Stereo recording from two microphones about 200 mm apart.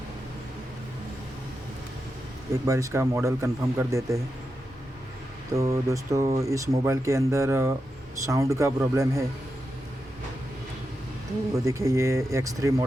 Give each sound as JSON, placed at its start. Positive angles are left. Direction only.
{"t": 2.6, "sound": "speech", "side_deg": -15}
{"t": 5.5, "sound": "speech", "side_deg": -15}
{"t": 11.5, "sound": "speech", "side_deg": -15}